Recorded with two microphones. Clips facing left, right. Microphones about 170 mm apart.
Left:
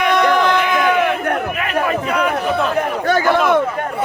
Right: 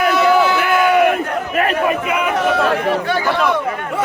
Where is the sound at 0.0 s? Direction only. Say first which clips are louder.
Right 1 dB; 5° right (ahead or behind).